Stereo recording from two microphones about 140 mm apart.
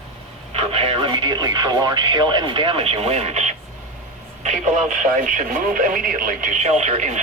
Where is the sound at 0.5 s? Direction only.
40° right (ahead or behind).